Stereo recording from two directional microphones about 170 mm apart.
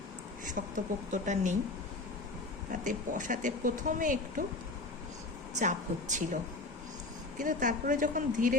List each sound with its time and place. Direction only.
0.6 s speech: 60° right (ahead or behind)
1.1 s speech: 45° right (ahead or behind)
2.8 s speech: 50° right (ahead or behind)
5.5 s speech: 45° right (ahead or behind)
7.3 s speech: 50° right (ahead or behind)